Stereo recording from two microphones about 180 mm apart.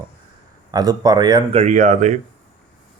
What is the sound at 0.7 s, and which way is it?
Speech, 20° right (ahead or behind).